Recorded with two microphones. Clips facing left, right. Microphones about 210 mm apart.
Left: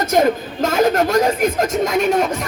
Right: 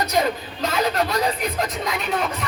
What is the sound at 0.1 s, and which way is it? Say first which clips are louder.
A man's voice: left 7 dB; 50° left (ahead or behind).